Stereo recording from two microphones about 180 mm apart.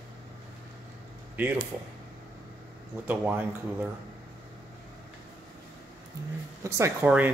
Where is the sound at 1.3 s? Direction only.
10° right (ahead or behind).